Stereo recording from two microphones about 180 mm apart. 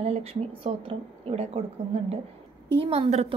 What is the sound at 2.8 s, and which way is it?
Speech, 35° right (ahead or behind).